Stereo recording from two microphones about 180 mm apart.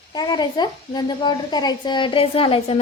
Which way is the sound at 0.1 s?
25° left (ahead or behind).